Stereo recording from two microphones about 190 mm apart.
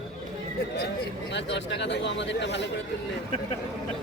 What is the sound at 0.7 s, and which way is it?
Speech, 65° left (ahead or behind).